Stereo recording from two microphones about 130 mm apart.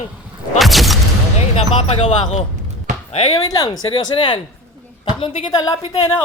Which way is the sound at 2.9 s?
70° right (ahead or behind).